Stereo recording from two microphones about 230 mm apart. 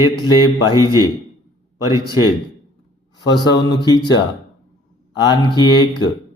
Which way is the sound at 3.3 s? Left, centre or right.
Centre.